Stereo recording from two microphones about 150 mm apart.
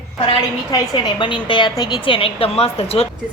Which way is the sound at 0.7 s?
30° left (ahead or behind).